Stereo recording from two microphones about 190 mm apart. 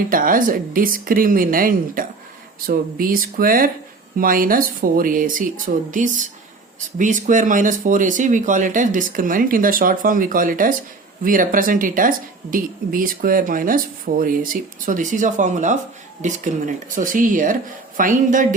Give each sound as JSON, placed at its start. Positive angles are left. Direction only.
{"t": 0.1, "sound": "speech", "side_deg": -45}